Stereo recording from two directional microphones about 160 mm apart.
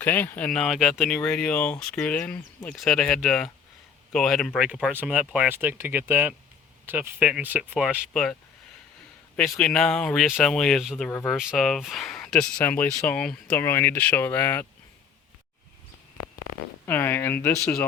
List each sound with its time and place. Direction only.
0.0 s speech: 10° left (ahead or behind)
16.8 s speech: 15° left (ahead or behind)